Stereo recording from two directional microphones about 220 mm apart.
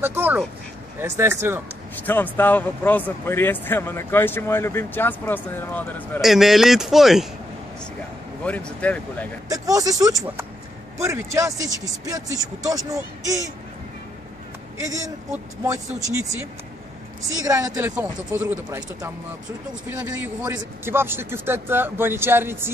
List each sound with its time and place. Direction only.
0.0 s speech: 10° right (ahead or behind)
2.0 s speech: 10° left (ahead or behind)
8.5 s speech: 5° left (ahead or behind)
9.5 s speech: 15° right (ahead or behind)
14.9 s speech: 15° right (ahead or behind)
17.5 s speech: 15° right (ahead or behind)